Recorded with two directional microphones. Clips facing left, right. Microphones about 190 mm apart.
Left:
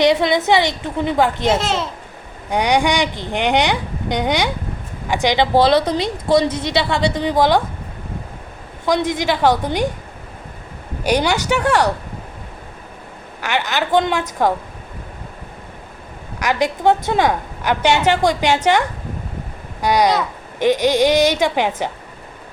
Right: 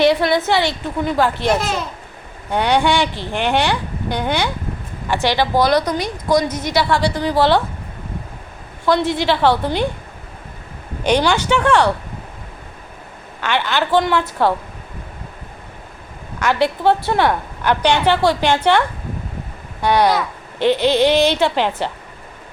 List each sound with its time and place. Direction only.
0.0 s a woman's voice: 20° left (ahead or behind)
8.9 s speech: 15° left (ahead or behind)
11.0 s speech: 10° left (ahead or behind)
13.4 s speech: 10° left (ahead or behind)
16.4 s speech: 10° left (ahead or behind)